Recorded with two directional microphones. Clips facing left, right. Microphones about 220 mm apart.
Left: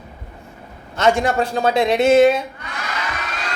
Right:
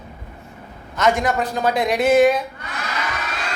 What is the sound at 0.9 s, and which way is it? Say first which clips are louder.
A man's voice: left 2 dB; 30° left (ahead or behind).